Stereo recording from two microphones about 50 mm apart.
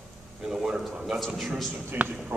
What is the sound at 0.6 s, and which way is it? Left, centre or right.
Speech, centre.